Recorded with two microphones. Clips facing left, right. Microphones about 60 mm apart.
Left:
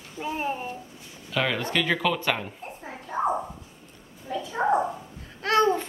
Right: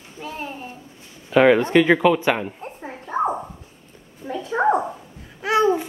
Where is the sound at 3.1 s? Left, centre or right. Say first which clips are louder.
Right 6 dB; right.